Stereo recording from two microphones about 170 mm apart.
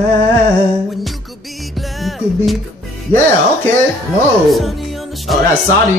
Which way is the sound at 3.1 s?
10° left (ahead or behind).